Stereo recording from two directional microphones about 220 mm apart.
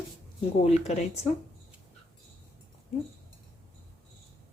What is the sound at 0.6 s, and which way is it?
Speech, 30° left (ahead or behind).